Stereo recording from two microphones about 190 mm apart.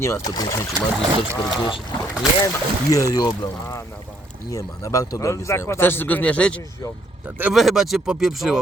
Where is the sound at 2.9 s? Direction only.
20° left (ahead or behind).